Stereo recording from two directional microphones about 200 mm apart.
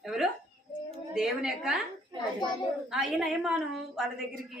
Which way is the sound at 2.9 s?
Centre (ahead or behind).